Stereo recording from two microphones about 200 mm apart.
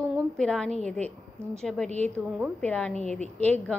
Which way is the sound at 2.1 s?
5° right (ahead or behind).